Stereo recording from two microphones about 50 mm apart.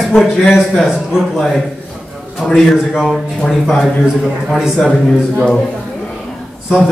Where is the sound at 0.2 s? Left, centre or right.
Centre.